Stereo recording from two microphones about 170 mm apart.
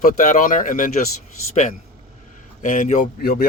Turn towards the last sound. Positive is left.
turn(degrees=60)  # may be behind; listen again after turning